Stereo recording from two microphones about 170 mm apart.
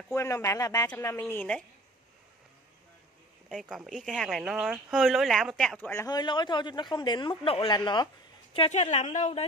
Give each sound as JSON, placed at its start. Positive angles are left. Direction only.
{"t": 0.1, "sound": "a man's voice", "side_deg": 20}
{"t": 3.4, "sound": "speech", "side_deg": 0}
{"t": 6.1, "sound": "a man's voice", "side_deg": 25}
{"t": 8.5, "sound": "a woman's voice", "side_deg": 40}